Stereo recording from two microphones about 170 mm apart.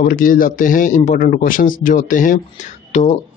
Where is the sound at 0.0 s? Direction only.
55° left (ahead or behind).